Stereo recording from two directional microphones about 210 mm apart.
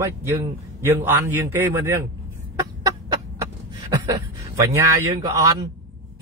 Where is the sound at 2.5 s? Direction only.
15° right (ahead or behind).